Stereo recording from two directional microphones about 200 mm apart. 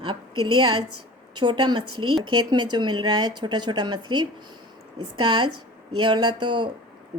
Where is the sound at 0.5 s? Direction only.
25° right (ahead or behind).